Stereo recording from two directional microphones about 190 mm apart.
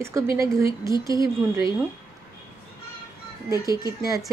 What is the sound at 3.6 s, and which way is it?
Speech, 20° right (ahead or behind).